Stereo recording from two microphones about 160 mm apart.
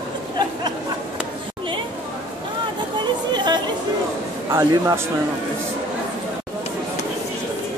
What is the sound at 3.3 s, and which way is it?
Chatter, 25° right (ahead or behind).